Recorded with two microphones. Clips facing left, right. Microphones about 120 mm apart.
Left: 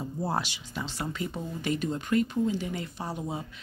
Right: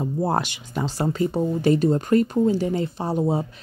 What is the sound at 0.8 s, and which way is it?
Speech, 35° right (ahead or behind).